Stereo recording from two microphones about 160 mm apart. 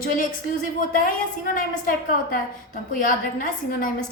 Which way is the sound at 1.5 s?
60° left (ahead or behind).